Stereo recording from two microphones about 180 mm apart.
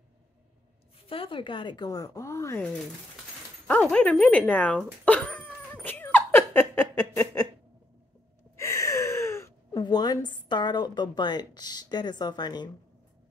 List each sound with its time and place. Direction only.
1.0 s speech: 30° left (ahead or behind); by 2.6 s 15° left (ahead or behind)
3.6 s dog: 5° left (ahead or behind)
8.5 s gasp: 15° left (ahead or behind)